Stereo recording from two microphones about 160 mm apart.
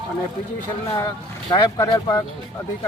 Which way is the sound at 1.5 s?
30° left (ahead or behind).